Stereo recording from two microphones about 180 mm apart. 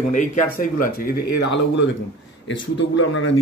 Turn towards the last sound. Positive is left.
turn(degrees=90)